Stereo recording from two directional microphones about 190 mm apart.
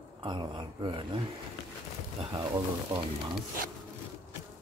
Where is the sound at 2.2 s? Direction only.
25° right (ahead or behind).